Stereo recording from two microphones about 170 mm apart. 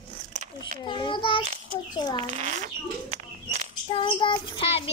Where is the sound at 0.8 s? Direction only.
30° left (ahead or behind).